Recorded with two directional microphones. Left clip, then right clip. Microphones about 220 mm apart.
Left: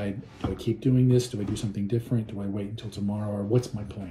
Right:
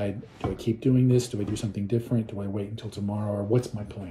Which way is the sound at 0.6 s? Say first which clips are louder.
Right 1 dB; 25° right (ahead or behind).